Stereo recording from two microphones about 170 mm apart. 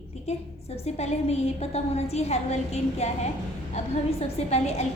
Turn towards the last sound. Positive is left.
turn(degrees=40)  # may be behind; listen again after turning